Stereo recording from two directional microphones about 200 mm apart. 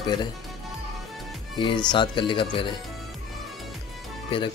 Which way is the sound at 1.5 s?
25° left (ahead or behind).